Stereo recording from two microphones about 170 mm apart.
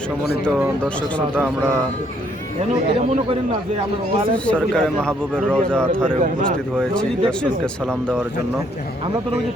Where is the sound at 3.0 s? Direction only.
40° right (ahead or behind).